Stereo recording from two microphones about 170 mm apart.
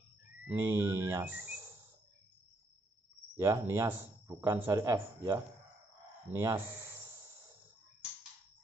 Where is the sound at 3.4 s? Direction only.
15° right (ahead or behind).